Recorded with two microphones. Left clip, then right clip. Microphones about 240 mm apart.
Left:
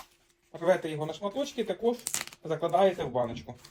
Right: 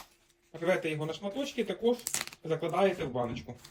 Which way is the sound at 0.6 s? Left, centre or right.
Centre.